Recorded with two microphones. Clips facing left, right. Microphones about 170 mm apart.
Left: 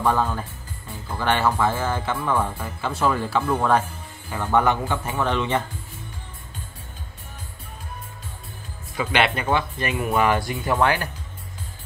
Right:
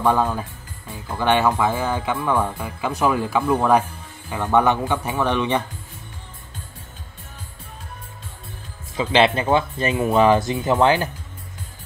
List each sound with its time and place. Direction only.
0.0 s speech: 10° right (ahead or behind)
8.9 s speech: 25° right (ahead or behind)